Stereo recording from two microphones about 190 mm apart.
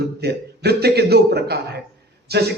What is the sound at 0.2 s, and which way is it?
A man's voice, 60° right (ahead or behind).